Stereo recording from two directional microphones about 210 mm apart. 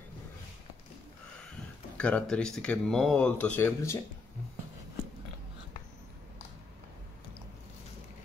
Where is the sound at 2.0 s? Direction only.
5° left (ahead or behind).